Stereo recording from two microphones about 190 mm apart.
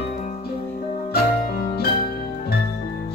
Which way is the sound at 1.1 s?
50° left (ahead or behind).